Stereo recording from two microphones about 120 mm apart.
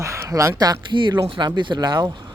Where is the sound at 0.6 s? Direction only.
35° right (ahead or behind).